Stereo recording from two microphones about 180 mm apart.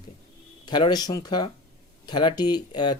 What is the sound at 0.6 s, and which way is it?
Speech, 25° left (ahead or behind).